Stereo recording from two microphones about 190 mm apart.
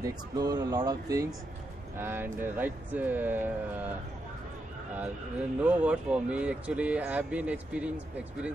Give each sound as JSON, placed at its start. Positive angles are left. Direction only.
{"t": 0.0, "sound": "speech", "side_deg": -20}
{"t": 5.6, "sound": "speech", "side_deg": -5}